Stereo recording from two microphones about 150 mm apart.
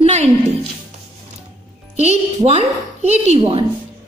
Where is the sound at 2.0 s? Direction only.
45° right (ahead or behind).